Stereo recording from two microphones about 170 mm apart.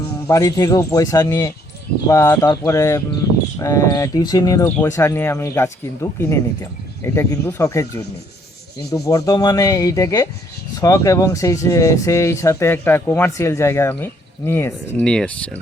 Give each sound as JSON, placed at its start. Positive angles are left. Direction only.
{"t": 0.3, "sound": "speech", "side_deg": 20}